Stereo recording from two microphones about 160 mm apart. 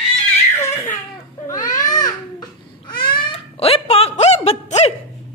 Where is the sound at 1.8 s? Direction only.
25° left (ahead or behind); by 4.9 s 45° left (ahead or behind).